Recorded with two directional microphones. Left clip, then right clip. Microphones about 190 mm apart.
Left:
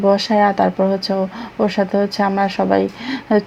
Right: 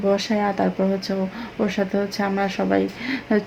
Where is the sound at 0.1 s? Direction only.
25° left (ahead or behind).